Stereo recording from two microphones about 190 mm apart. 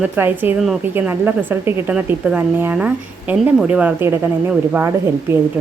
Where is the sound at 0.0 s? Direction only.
10° right (ahead or behind).